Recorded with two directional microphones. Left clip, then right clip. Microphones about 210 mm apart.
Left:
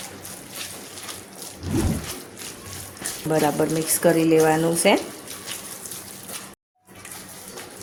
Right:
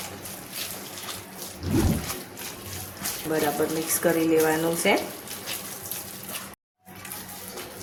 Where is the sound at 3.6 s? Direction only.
40° left (ahead or behind).